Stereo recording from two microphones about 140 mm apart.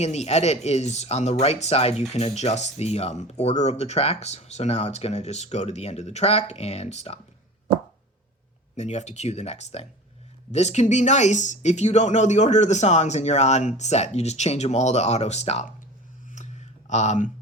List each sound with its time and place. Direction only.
0.0 s speech: 50° left (ahead or behind)
8.7 s speech: 55° left (ahead or behind)
16.3 s a sound: 60° left (ahead or behind)